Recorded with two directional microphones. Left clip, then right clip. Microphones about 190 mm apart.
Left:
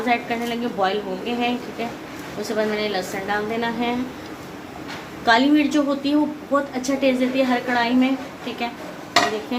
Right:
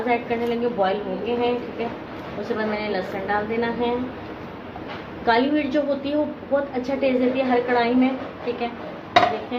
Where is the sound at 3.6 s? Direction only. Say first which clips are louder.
Even; 45° left (ahead or behind).